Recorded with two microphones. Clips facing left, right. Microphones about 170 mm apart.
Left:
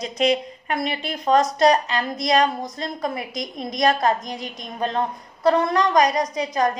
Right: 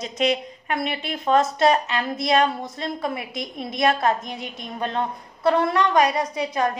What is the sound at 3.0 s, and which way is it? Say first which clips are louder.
Speech: left 1 dB; 5° right (ahead or behind).